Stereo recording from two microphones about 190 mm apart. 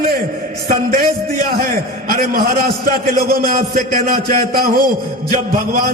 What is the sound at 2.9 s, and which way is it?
A man's voice, 50° right (ahead or behind).